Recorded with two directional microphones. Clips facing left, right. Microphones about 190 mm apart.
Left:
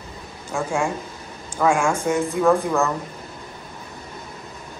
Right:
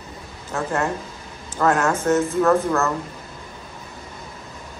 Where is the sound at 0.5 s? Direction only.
10° left (ahead or behind).